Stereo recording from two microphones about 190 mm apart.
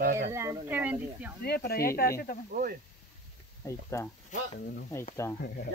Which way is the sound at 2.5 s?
50° right (ahead or behind).